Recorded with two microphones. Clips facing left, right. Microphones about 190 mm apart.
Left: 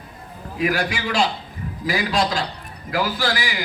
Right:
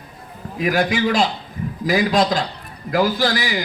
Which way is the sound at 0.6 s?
40° right (ahead or behind).